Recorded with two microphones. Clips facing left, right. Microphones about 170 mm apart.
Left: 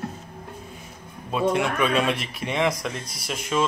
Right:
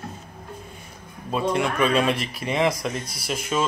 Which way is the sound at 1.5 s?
Centre (ahead or behind).